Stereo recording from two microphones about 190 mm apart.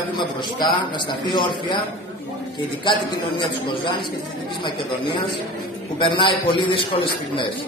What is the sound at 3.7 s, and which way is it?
Speech, 25° left (ahead or behind).